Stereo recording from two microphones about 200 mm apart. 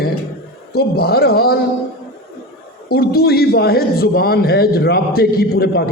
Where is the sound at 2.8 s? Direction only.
50° left (ahead or behind).